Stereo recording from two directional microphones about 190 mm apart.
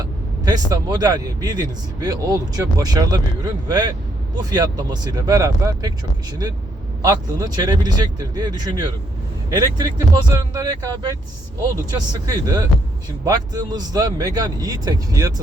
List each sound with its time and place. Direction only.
0.0 s speech: 20° right (ahead or behind)
7.0 s speech: 20° right (ahead or behind)